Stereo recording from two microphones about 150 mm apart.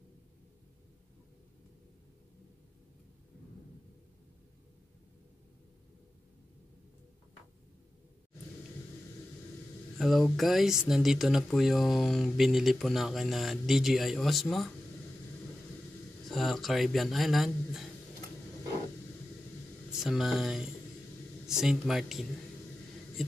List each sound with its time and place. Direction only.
9.9 s speech: centre (ahead or behind)
16.3 s speech: centre (ahead or behind)
19.9 s speech: centre (ahead or behind)